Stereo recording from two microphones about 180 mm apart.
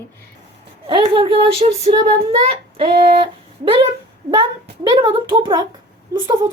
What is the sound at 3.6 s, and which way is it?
A woman's voice, 30° right (ahead or behind).